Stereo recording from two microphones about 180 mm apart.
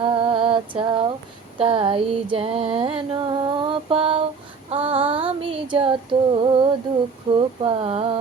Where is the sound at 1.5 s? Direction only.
30° right (ahead or behind).